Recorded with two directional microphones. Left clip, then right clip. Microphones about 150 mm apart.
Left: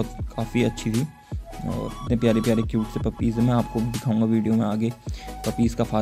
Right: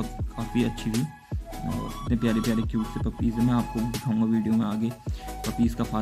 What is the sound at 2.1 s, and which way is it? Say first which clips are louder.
Speech: left 6 dB; 30° left (ahead or behind).